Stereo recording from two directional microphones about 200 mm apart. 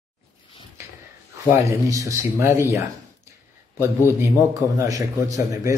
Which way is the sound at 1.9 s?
15° right (ahead or behind).